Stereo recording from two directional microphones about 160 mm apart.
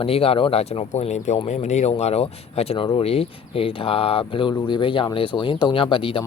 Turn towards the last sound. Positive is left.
turn(degrees=35)  # may be behind; listen again after turning